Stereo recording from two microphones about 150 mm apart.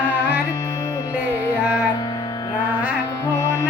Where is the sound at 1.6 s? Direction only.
10° right (ahead or behind).